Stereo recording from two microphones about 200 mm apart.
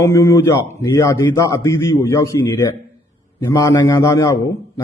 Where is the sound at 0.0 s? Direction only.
15° left (ahead or behind).